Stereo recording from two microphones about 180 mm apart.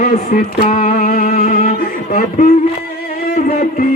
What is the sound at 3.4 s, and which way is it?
Music, 50° left (ahead or behind).